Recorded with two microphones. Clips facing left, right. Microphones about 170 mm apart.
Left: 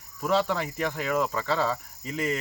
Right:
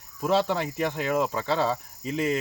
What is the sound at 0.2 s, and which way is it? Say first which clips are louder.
Speech: right 1 dB; 25° right (ahead or behind).